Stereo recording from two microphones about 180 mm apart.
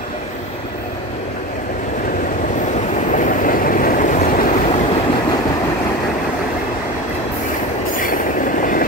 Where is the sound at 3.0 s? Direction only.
45° left (ahead or behind).